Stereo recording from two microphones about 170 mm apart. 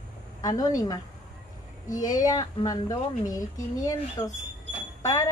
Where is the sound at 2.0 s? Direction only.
20° left (ahead or behind).